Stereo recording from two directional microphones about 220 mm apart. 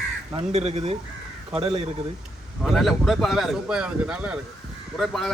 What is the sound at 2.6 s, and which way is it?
Speech, centre (ahead or behind).